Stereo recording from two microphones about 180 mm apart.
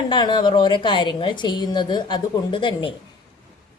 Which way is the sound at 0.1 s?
25° left (ahead or behind).